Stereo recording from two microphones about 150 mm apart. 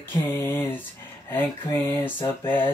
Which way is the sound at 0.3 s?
15° left (ahead or behind).